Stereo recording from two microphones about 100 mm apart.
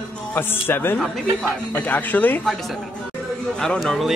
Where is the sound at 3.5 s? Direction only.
5° left (ahead or behind).